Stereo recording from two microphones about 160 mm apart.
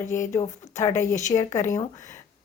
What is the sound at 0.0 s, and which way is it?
Speech, 50° left (ahead or behind).